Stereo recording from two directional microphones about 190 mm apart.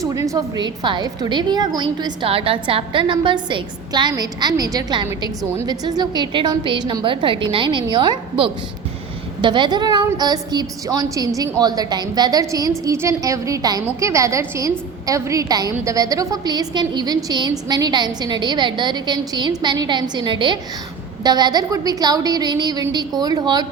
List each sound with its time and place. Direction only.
0.0 s a woman's voice: 15° right (ahead or behind)